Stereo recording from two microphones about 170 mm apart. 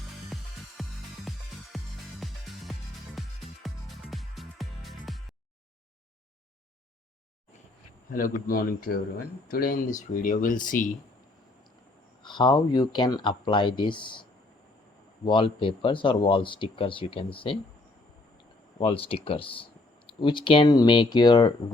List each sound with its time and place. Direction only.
0.3 s music: centre (ahead or behind)
8.1 s speech: 55° left (ahead or behind)
12.2 s speech: 25° left (ahead or behind)
18.8 s speech: 35° left (ahead or behind)